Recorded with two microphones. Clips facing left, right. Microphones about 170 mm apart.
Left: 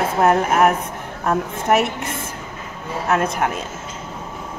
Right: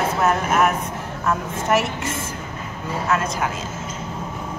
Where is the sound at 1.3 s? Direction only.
60° left (ahead or behind).